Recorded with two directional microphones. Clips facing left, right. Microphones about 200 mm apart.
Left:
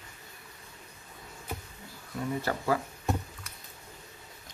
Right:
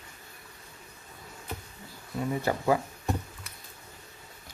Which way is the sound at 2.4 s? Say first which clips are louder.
Right 4 dB; 20° right (ahead or behind).